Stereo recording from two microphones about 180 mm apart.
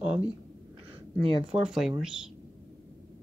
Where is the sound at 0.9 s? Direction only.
30° right (ahead or behind).